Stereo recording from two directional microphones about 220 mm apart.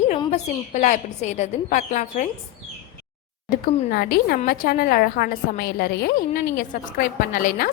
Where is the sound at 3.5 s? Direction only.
45° left (ahead or behind).